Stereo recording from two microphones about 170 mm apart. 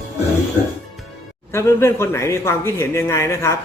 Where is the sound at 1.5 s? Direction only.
15° left (ahead or behind).